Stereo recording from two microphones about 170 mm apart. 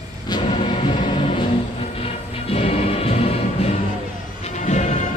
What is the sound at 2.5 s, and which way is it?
Music, 35° left (ahead or behind).